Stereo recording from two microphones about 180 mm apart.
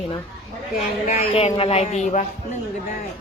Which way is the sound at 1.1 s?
35° left (ahead or behind).